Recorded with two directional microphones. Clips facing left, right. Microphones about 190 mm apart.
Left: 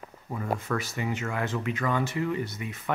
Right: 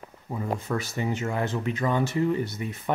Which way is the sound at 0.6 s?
25° right (ahead or behind).